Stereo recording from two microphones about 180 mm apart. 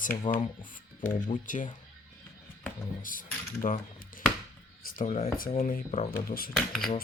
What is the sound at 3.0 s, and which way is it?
Speech, 50° left (ahead or behind).